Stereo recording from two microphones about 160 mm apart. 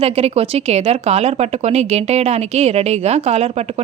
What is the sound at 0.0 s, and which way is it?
Speech, 40° right (ahead or behind).